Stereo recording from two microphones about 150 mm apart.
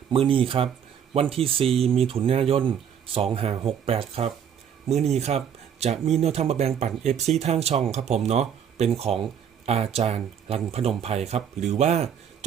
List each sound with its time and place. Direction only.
0.1 s speech: 35° right (ahead or behind)